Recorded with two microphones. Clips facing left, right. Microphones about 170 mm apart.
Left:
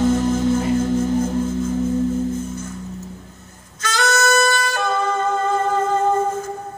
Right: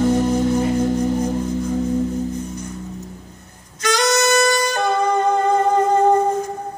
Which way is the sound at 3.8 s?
15° right (ahead or behind).